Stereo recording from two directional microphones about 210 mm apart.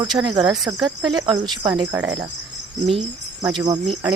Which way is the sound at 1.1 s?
20° right (ahead or behind).